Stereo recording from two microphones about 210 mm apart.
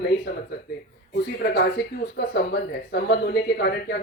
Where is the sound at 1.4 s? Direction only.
50° left (ahead or behind).